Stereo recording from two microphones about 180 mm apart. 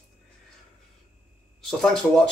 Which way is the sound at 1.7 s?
Centre (ahead or behind).